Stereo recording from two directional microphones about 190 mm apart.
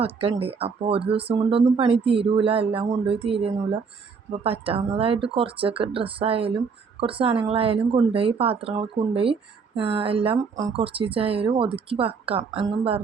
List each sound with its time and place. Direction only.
0.0 s speech: 30° right (ahead or behind)